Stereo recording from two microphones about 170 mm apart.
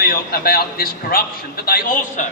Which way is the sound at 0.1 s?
60° left (ahead or behind).